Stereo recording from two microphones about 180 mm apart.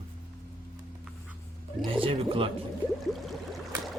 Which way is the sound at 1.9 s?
30° right (ahead or behind).